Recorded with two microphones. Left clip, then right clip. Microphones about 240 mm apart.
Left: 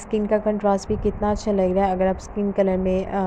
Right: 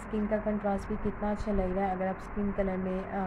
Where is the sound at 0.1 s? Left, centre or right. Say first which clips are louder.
Left 11 dB; left.